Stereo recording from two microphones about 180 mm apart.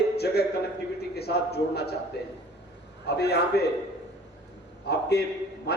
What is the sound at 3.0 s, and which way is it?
Speech, 65° left (ahead or behind).